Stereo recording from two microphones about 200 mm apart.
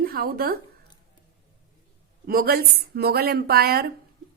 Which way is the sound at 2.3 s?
45° right (ahead or behind).